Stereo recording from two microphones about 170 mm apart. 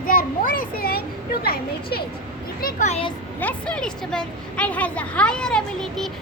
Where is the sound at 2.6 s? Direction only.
50° left (ahead or behind).